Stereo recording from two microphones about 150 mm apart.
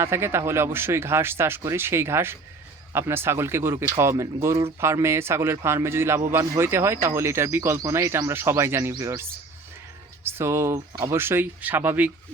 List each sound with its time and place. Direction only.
0.0 s speech: 15° right (ahead or behind)
10.2 s speech: 15° right (ahead or behind)